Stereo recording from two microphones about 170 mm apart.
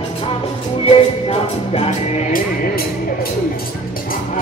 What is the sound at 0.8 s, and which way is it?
Music, 35° left (ahead or behind).